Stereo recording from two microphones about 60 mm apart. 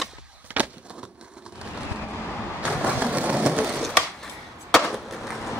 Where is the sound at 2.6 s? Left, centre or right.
Right.